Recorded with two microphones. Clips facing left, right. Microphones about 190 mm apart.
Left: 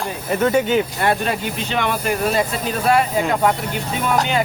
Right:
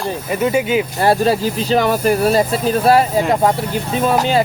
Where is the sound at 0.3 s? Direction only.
10° right (ahead or behind).